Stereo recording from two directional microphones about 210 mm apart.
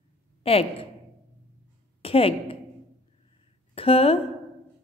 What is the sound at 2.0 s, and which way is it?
Speech, 25° left (ahead or behind).